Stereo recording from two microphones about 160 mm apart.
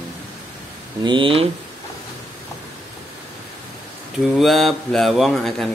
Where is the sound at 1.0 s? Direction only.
30° right (ahead or behind).